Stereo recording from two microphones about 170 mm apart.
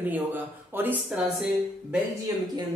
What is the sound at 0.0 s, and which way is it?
Speech, 10° right (ahead or behind).